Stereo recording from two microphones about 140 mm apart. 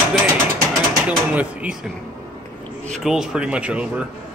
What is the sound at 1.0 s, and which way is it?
Speech, 10° right (ahead or behind).